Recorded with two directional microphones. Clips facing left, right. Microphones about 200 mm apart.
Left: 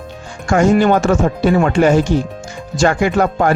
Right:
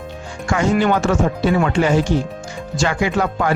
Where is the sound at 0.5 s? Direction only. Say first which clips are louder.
Left 5 dB; 45° left (ahead or behind).